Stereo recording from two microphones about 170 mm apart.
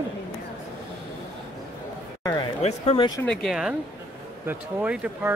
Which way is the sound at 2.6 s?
40° left (ahead or behind).